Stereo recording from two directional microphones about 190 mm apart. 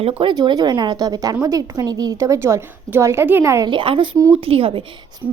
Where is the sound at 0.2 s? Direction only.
25° right (ahead or behind).